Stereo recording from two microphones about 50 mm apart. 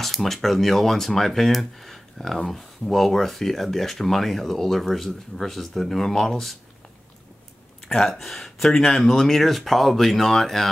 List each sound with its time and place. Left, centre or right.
0.0 s speech: centre
7.9 s speech: centre